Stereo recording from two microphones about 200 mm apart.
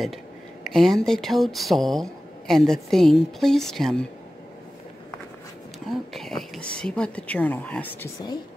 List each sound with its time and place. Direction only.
0.7 s speech: centre (ahead or behind)
5.9 s speech: centre (ahead or behind)